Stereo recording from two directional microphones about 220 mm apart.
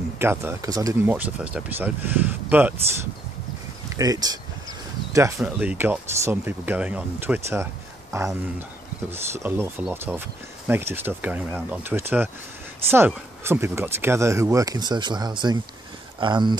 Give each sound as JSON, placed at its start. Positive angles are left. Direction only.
{"t": 0.2, "sound": "speech", "side_deg": -10}
{"t": 3.9, "sound": "speech", "side_deg": -15}